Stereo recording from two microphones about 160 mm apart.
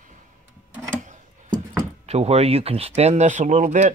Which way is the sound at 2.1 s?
40° right (ahead or behind).